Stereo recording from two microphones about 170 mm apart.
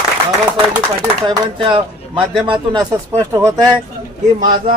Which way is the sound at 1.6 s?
30° right (ahead or behind).